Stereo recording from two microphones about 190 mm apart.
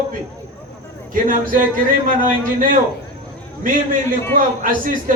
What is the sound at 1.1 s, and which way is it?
A man's voice, 45° right (ahead or behind).